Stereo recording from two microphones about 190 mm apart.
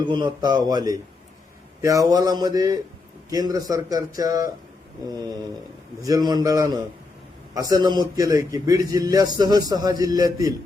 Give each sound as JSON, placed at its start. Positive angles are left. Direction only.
{"t": 0.0, "sound": "a man's voice", "side_deg": -25}
{"t": 6.0, "sound": "a man's voice", "side_deg": -20}